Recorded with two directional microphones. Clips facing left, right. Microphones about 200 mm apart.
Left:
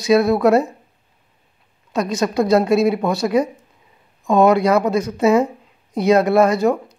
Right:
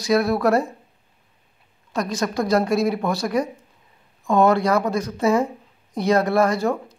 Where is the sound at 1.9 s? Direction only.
20° left (ahead or behind).